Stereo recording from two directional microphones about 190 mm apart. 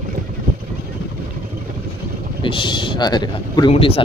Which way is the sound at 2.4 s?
25° left (ahead or behind).